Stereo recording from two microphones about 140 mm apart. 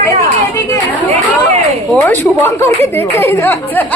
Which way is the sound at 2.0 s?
20° left (ahead or behind).